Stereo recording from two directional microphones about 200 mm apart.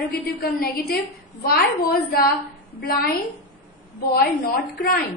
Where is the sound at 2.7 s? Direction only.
50° left (ahead or behind).